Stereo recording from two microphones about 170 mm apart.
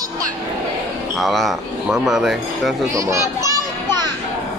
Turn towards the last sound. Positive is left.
turn(degrees=-20)  # may be behind; listen again after turning